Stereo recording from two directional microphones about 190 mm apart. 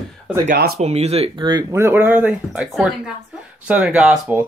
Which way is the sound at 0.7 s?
35° right (ahead or behind).